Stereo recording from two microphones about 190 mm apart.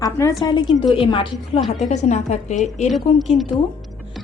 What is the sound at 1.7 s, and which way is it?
A woman's voice, 35° left (ahead or behind).